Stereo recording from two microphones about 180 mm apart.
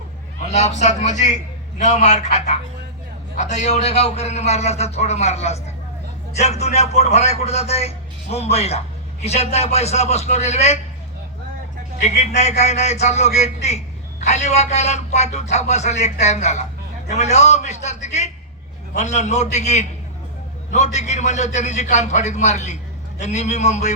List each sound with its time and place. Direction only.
0.4 s a man's voice: 40° left (ahead or behind)
12.0 s a man's voice: 40° left (ahead or behind)